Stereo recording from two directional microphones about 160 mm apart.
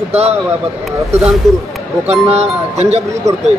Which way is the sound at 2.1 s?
40° right (ahead or behind).